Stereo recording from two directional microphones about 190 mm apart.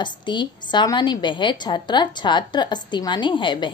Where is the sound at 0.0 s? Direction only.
25° left (ahead or behind).